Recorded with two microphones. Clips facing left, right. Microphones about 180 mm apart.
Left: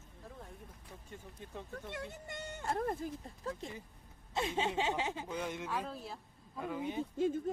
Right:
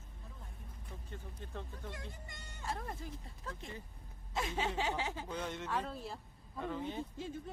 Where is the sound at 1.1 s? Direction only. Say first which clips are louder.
Even; 10° left (ahead or behind).